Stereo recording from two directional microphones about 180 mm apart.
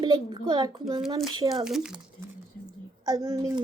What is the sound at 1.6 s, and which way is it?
Speech, 5° right (ahead or behind).